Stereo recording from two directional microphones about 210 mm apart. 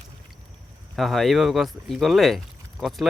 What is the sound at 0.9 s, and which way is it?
Speech, centre (ahead or behind).